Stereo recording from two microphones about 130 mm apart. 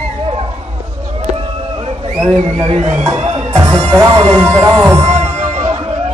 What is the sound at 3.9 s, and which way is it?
Speech, 35° right (ahead or behind).